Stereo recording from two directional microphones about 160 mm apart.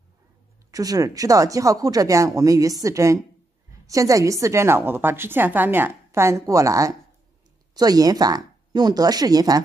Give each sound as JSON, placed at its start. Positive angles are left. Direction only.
{"t": 0.7, "sound": "a woman's voice", "side_deg": -20}